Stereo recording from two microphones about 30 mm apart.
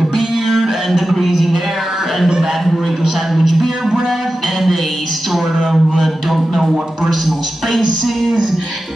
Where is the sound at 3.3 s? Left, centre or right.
Centre.